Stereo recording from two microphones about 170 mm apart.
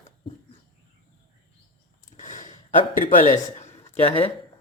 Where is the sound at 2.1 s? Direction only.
45° left (ahead or behind).